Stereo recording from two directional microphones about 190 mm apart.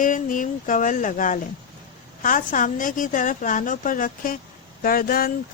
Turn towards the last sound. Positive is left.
turn(degrees=50)  # may be behind; listen again after turning